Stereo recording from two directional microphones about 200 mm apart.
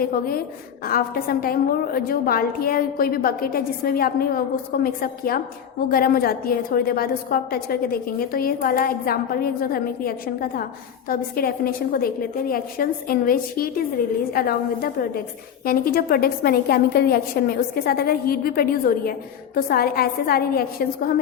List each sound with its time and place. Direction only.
0.0 s a woman's voice: 45° left (ahead or behind)